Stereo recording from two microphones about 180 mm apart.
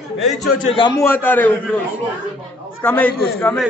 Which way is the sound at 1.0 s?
10° left (ahead or behind).